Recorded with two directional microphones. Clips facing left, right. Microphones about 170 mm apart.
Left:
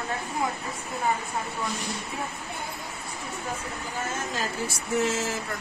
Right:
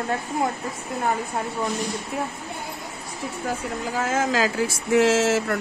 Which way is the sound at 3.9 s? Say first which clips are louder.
Right 10 dB; 90° right.